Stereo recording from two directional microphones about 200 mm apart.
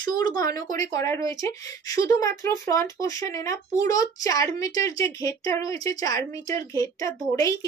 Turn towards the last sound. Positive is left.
turn(degrees=15)  # may be behind; listen again after turning